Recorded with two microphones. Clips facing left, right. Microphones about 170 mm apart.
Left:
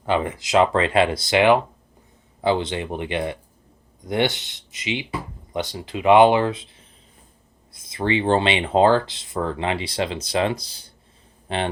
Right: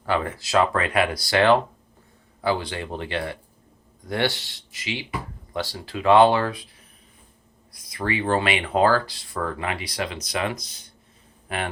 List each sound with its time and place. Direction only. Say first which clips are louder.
0.0 s a man's voice: left 3 dB; 20° left (ahead or behind)